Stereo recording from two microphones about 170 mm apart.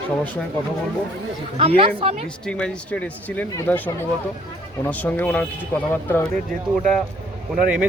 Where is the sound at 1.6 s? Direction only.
35° right (ahead or behind).